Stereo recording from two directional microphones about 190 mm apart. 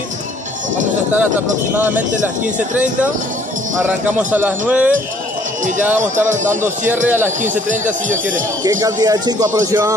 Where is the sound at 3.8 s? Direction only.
5° right (ahead or behind).